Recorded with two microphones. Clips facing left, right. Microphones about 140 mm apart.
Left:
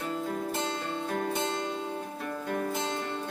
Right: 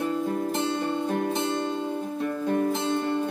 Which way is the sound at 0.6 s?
20° right (ahead or behind).